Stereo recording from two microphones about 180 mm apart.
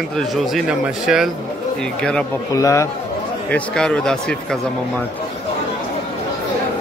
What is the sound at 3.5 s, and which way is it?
Speech, 5° left (ahead or behind).